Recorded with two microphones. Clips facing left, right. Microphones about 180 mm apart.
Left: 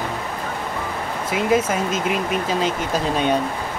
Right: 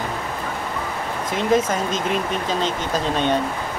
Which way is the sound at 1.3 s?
10° left (ahead or behind).